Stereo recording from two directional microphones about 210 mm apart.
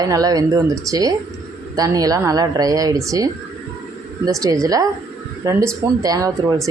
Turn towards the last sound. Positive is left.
turn(degrees=-15)  # may be behind; listen again after turning